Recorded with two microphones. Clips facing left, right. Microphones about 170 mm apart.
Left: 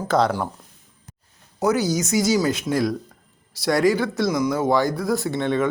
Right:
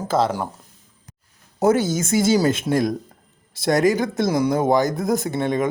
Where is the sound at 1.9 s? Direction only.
55° right (ahead or behind).